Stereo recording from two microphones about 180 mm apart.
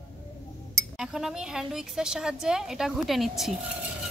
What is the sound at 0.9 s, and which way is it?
A woman's voice, 5° right (ahead or behind).